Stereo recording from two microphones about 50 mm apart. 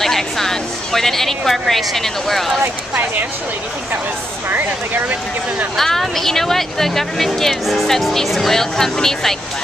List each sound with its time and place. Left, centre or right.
0.0 s speech: centre
2.9 s speech: right
4.5 s speech: right
5.8 s speech: centre